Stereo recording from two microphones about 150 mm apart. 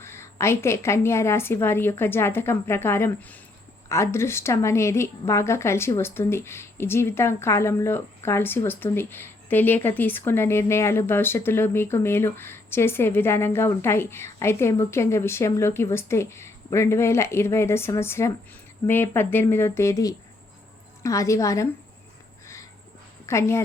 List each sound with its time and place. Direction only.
0.0 s a woman's voice: 15° left (ahead or behind)
23.2 s speech: 20° left (ahead or behind)